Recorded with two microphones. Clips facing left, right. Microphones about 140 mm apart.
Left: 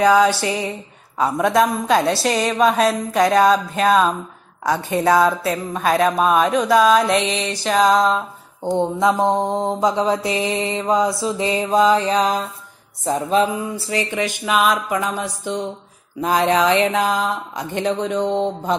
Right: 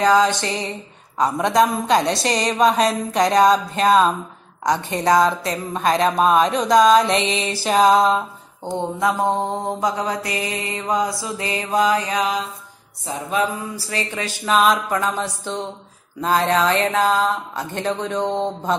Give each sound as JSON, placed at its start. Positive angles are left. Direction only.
{"t": 0.0, "sound": "speech", "side_deg": 10}
{"t": 8.7, "sound": "mantra", "side_deg": 20}
{"t": 13.0, "sound": "music", "side_deg": 40}
{"t": 13.7, "sound": "mantra", "side_deg": 20}
{"t": 14.4, "sound": "speech", "side_deg": 5}